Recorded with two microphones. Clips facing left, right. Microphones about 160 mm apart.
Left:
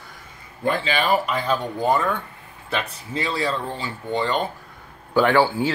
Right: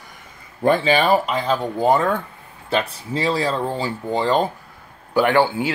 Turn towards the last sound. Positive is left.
turn(degrees=-15)  # may be behind; listen again after turning